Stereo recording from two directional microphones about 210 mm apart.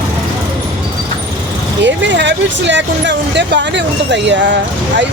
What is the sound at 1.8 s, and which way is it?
Speech, 60° right (ahead or behind).